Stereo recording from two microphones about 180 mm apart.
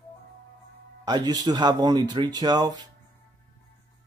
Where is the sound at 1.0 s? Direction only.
20° right (ahead or behind).